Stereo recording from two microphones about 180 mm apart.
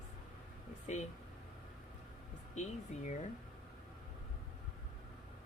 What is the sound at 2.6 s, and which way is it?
Speech, 40° left (ahead or behind).